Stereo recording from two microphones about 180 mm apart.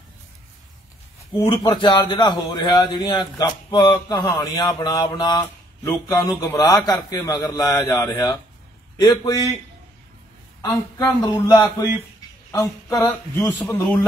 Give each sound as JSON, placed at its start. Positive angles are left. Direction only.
{"t": 1.4, "sound": "a man's voice", "side_deg": 25}
{"t": 10.6, "sound": "a man's voice", "side_deg": 20}
{"t": 12.4, "sound": "a sound", "side_deg": 20}